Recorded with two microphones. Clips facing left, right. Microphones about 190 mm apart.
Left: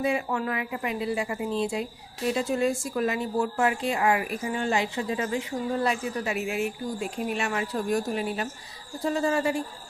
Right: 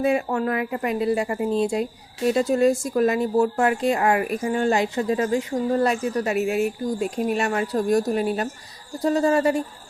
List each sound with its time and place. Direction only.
0.0 s a woman's voice: 45° right (ahead or behind)